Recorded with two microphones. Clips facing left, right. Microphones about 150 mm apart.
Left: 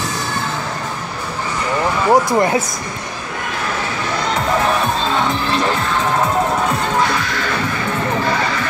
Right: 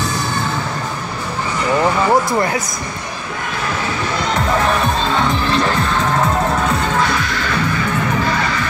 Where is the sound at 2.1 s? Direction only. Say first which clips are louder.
Left 2 dB; 20° left (ahead or behind).